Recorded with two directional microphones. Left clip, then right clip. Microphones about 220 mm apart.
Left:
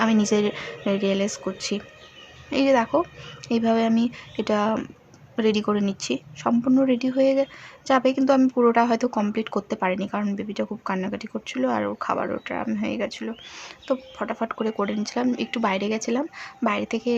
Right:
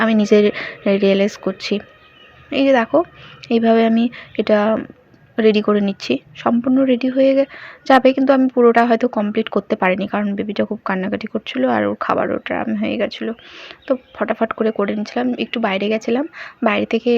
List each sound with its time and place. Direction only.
0.0 s speech: 15° right (ahead or behind)